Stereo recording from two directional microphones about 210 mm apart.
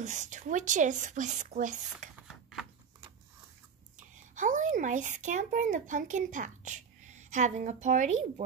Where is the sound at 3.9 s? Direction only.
35° right (ahead or behind).